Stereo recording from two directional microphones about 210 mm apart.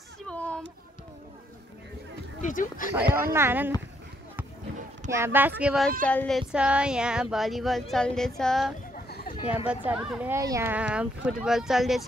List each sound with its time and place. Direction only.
0.3 s a sound: 5° left (ahead or behind)
2.4 s speech: 40° left (ahead or behind)
2.9 s speech: 10° right (ahead or behind)
5.1 s speech: 10° right (ahead or behind)
8.9 s a sound: 50° left (ahead or behind)
9.7 s speech: 5° right (ahead or behind)